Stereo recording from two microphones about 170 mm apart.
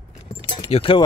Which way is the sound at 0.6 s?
35° left (ahead or behind).